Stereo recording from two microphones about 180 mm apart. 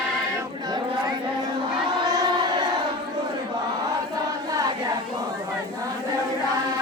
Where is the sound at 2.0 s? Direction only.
20° right (ahead or behind).